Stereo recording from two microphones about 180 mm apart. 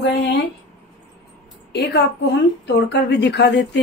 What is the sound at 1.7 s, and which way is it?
Speech, 65° left (ahead or behind).